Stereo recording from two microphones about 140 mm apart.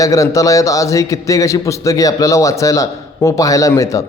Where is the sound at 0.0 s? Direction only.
25° left (ahead or behind).